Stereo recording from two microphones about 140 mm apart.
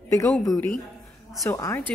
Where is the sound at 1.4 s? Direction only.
20° left (ahead or behind).